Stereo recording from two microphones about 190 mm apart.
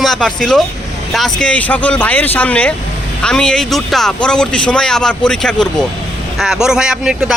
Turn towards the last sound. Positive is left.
turn(degrees=-5)  # may be behind; listen again after turning